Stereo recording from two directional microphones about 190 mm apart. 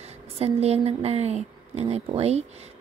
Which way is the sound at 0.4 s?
35° right (ahead or behind).